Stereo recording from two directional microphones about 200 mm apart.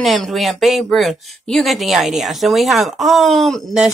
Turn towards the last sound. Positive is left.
turn(degrees=0)  # may be behind; listen again after turning